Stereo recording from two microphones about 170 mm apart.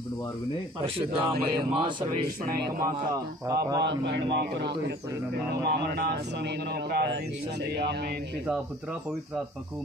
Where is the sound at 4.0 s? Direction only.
90° right.